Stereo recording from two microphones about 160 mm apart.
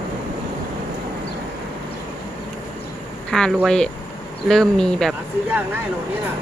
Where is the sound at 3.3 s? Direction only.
5° left (ahead or behind).